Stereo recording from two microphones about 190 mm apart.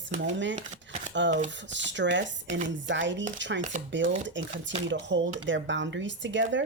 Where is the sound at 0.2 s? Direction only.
70° right (ahead or behind).